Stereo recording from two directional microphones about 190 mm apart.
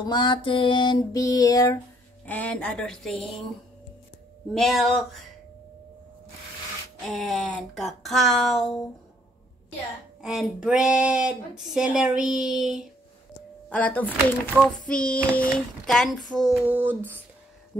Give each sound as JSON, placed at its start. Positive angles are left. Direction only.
{"t": 0.0, "sound": "a sound", "side_deg": 25}
{"t": 2.2, "sound": "speech", "side_deg": 5}
{"t": 4.6, "sound": "speech", "side_deg": 0}
{"t": 7.1, "sound": "speech", "side_deg": 0}
{"t": 10.2, "sound": "speech", "side_deg": -5}
{"t": 16.3, "sound": "a sound", "side_deg": 0}